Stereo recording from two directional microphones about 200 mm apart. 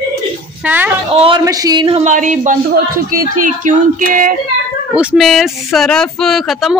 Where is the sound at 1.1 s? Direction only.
25° right (ahead or behind).